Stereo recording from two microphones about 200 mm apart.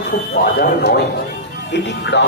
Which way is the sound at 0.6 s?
55° left (ahead or behind).